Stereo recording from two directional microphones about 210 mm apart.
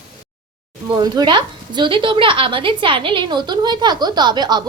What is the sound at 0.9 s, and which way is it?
A woman's voice, 20° right (ahead or behind).